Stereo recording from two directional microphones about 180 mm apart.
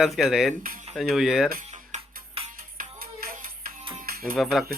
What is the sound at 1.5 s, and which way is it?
Music, 50° right (ahead or behind).